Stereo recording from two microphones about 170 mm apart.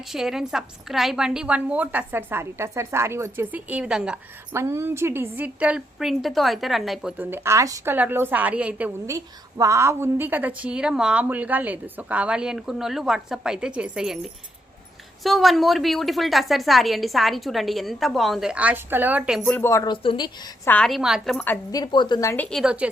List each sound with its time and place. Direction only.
0.1 s a woman's voice: centre (ahead or behind)
4.5 s a woman's voice: 15° right (ahead or behind)
7.2 s a woman's voice: 10° right (ahead or behind)
15.2 s a woman's voice: centre (ahead or behind)
19.4 s a woman's voice: 10° left (ahead or behind); by 20.3 s 30° left (ahead or behind)
20.7 s a woman's voice: 5° left (ahead or behind)
21.3 s a woman's voice: 10° left (ahead or behind)
21.7 s a woman's voice: 25° left (ahead or behind)
22.4 s a woman's voice: centre (ahead or behind)